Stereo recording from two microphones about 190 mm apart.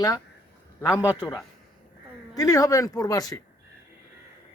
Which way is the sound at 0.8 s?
15° left (ahead or behind).